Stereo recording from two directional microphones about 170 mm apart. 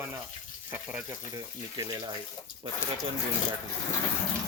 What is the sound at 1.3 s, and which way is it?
Speech, 25° right (ahead or behind).